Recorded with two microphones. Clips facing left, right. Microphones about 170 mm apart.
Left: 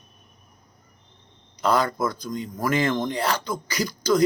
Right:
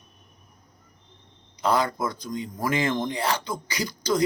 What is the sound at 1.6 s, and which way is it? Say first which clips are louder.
A man's voice: left 2 dB; 20° right (ahead or behind).